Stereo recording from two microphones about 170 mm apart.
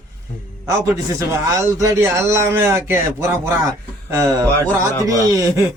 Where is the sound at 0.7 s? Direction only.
20° right (ahead or behind).